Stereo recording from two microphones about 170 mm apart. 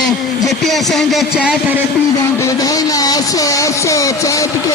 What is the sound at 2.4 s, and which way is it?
Speech, 20° left (ahead or behind).